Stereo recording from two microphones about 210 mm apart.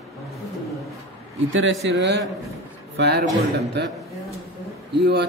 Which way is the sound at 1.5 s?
65° right (ahead or behind).